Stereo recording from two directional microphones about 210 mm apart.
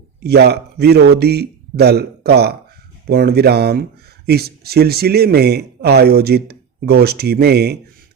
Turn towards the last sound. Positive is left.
turn(degrees=-50)  # may be behind; listen again after turning